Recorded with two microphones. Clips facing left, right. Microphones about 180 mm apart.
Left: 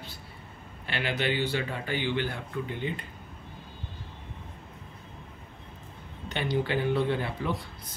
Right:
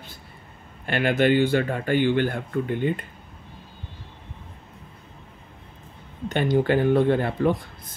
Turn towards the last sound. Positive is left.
turn(degrees=-50)  # may be behind; listen again after turning